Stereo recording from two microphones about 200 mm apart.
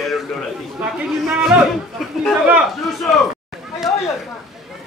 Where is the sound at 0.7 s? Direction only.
5° right (ahead or behind).